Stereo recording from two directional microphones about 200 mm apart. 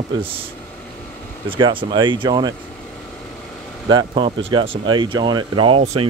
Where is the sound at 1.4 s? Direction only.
25° right (ahead or behind).